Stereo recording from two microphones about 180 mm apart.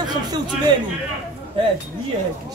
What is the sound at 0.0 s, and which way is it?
Speech, 25° right (ahead or behind).